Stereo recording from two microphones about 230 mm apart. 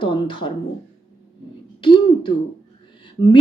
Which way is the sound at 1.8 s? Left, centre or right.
Left.